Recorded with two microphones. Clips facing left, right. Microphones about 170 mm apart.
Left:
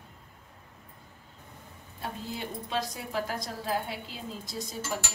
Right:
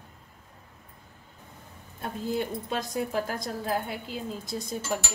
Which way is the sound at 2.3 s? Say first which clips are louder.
Right 6 dB; 50° right (ahead or behind).